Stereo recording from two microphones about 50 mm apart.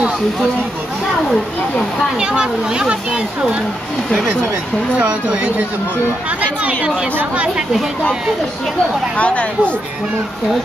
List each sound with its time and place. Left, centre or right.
2.1 s speech: centre
4.9 s speech: right
9.1 s speech: left